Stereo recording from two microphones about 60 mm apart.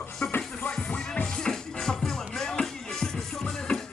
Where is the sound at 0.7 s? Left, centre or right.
Centre.